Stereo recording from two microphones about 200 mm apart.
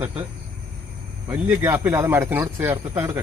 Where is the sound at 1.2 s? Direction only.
10° right (ahead or behind).